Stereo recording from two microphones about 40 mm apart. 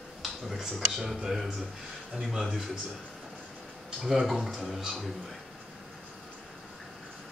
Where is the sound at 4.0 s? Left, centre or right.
Centre.